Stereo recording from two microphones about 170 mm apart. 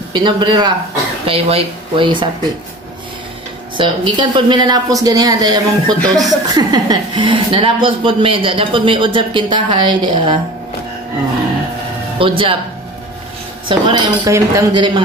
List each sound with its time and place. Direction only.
0.1 s speech: 25° right (ahead or behind)
3.7 s speech: 30° right (ahead or behind)
12.2 s speech: 30° right (ahead or behind)
13.7 s speech: 30° right (ahead or behind)